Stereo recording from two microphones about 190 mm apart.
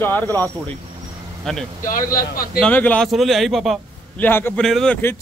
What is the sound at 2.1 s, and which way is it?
Speech, 50° left (ahead or behind).